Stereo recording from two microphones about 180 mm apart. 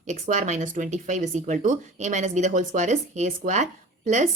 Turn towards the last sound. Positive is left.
turn(degrees=-45)  # may be behind; listen again after turning